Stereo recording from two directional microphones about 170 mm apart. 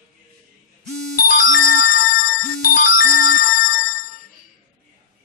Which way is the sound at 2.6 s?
55° left (ahead or behind).